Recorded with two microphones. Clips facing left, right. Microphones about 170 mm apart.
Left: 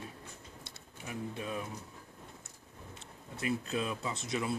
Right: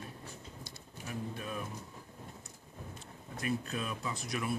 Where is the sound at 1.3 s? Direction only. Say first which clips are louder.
Left 2 dB; 20° left (ahead or behind).